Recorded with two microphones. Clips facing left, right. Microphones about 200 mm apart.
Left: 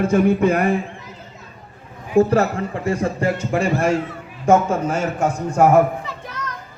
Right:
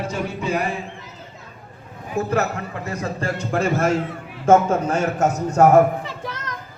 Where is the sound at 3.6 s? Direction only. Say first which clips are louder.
Even; 10° left (ahead or behind).